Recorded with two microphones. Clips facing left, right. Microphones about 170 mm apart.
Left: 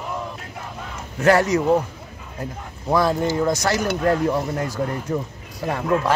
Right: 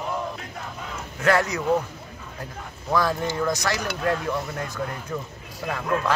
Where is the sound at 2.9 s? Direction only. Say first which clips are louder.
Left 4 dB; 25° left (ahead or behind).